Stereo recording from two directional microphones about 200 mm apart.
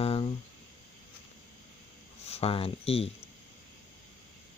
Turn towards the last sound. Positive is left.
turn(degrees=30)  # may be behind; listen again after turning